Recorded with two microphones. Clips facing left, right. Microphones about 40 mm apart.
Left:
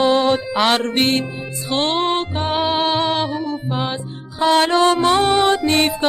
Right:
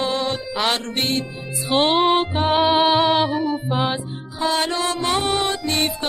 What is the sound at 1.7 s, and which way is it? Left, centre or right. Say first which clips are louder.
Music: right 2 dB; centre.